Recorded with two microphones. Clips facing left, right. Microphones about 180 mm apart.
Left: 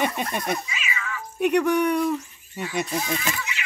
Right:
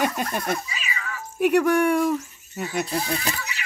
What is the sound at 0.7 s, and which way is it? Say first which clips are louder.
Cat: left 1 dB; 35° right (ahead or behind).